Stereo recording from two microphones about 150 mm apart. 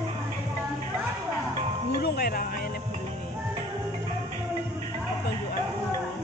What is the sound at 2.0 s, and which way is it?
Music, 90° left.